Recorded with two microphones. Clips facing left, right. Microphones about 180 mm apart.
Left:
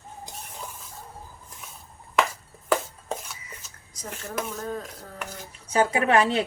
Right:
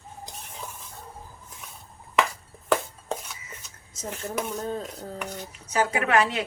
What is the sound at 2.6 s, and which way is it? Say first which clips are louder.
Chopping: even; centre (ahead or behind).